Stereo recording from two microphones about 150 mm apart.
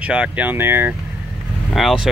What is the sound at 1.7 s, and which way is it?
Speech, centre (ahead or behind).